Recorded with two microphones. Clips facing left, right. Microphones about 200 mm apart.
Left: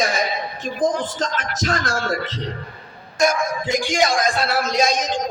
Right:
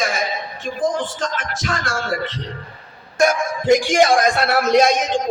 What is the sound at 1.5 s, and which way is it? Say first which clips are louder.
Speech: left 2 dB; 40° left (ahead or behind).